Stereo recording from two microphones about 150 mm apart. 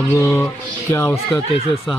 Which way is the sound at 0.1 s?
20° left (ahead or behind).